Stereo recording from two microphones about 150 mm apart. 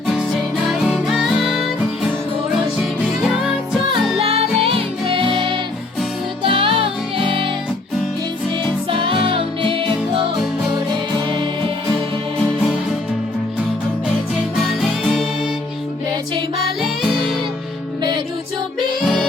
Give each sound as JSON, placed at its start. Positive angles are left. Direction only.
{"t": 0.1, "sound": "music", "side_deg": 0}
{"t": 3.0, "sound": "music", "side_deg": -5}
{"t": 4.2, "sound": "music", "side_deg": -40}
{"t": 8.9, "sound": "music", "side_deg": -35}
{"t": 14.7, "sound": "music", "side_deg": 0}
{"t": 17.0, "sound": "music", "side_deg": 0}